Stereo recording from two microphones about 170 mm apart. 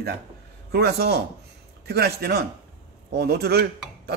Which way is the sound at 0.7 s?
70° right (ahead or behind).